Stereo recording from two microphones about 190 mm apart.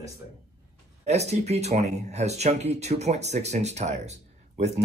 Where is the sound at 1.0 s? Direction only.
35° right (ahead or behind).